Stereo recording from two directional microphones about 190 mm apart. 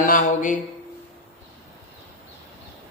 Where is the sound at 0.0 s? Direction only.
45° left (ahead or behind).